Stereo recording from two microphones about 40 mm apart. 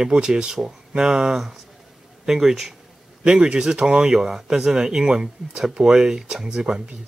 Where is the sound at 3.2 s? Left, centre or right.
Right.